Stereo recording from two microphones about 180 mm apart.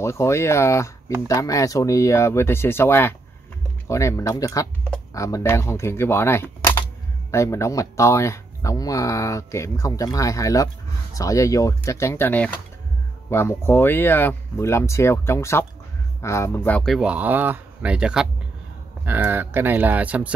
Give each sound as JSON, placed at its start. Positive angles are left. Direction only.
{"t": 0.0, "sound": "speech", "side_deg": 15}